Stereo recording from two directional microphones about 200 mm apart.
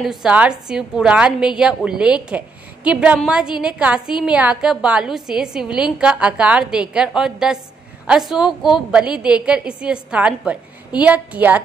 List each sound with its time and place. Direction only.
0.0 s a woman's voice: centre (ahead or behind)